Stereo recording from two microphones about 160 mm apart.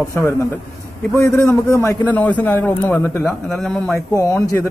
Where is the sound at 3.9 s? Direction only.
20° left (ahead or behind).